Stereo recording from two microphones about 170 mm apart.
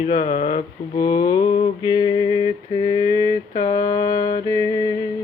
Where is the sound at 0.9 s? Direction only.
25° left (ahead or behind).